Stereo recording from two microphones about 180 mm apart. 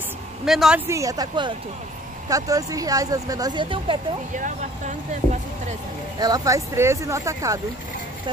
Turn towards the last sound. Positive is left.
turn(degrees=-15)  # may be behind; listen again after turning